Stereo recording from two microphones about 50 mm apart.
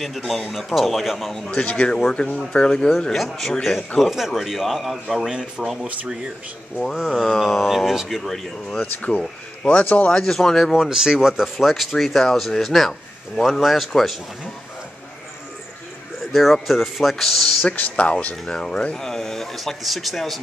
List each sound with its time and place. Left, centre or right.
0.0 s speech: centre
1.3 s a man's voice: centre
3.1 s speech: centre
5.3 s speech: centre
7.1 s speech: centre
8.7 s speech: left
9.2 s speech: left
10.0 s a man's voice: centre
10.7 s speech: centre
16.3 s speech: centre
17.6 s speech: left
18.3 s a man's voice: centre
18.9 s speech: centre